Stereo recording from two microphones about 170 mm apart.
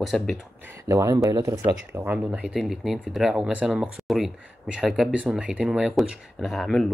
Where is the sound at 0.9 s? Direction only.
15° right (ahead or behind).